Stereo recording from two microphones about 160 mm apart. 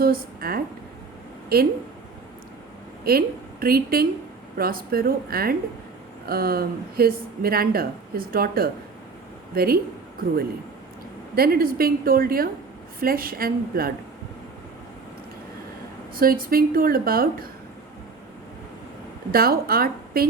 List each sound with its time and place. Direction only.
0.0 s speech: 65° right (ahead or behind)
3.0 s a woman's voice: 70° right (ahead or behind)
11.3 s speech: 70° right (ahead or behind)
16.1 s a woman's voice: 65° right (ahead or behind)
19.3 s speech: 70° right (ahead or behind)